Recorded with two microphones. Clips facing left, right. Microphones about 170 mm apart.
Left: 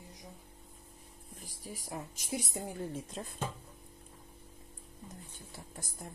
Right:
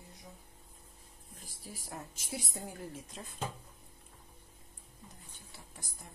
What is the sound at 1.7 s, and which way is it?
Speech, 15° left (ahead or behind).